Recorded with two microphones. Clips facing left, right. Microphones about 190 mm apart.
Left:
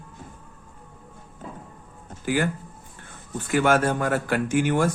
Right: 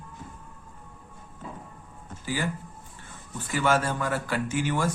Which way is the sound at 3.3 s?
55° left (ahead or behind).